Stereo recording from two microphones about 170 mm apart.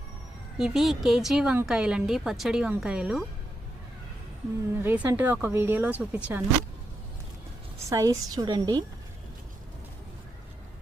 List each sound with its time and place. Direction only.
0.6 s speech: centre (ahead or behind)
4.8 s speech: 10° right (ahead or behind)
7.9 s a woman's voice: 20° right (ahead or behind)